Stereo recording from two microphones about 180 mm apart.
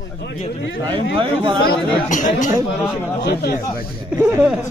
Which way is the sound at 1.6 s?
45° left (ahead or behind).